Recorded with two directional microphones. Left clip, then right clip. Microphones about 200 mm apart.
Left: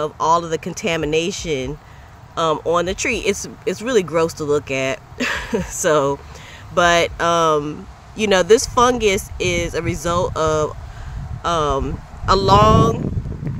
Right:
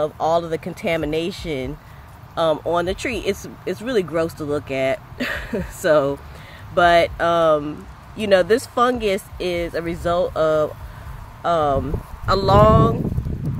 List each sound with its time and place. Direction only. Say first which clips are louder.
0.0 s speech: left 2 dB; 20° left (ahead or behind)